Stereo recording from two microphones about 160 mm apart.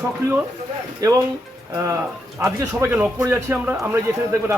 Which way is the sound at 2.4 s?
15° right (ahead or behind).